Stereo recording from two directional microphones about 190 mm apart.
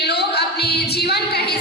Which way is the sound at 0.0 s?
60° left (ahead or behind).